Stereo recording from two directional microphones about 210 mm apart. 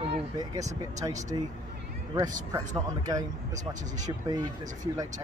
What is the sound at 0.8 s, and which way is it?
Speech, 15° right (ahead or behind).